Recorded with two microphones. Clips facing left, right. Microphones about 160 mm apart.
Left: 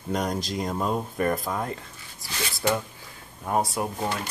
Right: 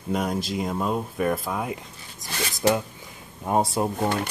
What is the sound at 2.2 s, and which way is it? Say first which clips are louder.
Speech: right 4 dB; 45° right (ahead or behind).